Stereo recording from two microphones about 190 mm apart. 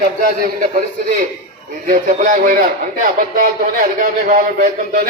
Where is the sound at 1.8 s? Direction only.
45° right (ahead or behind).